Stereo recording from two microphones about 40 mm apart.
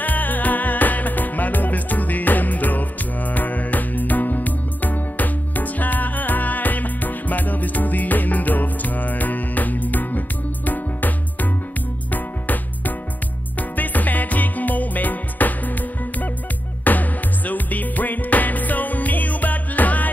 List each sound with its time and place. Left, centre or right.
0.0 s music: left